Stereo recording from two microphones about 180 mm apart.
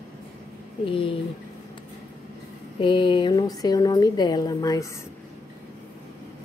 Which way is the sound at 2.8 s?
25° left (ahead or behind).